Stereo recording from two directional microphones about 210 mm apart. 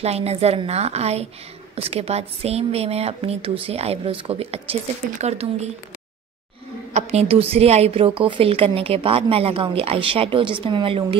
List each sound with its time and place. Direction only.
0.0 s a woman's voice: 30° right (ahead or behind)
6.9 s a woman's voice: 30° right (ahead or behind)